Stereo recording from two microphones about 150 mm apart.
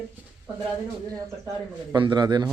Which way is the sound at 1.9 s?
30° right (ahead or behind).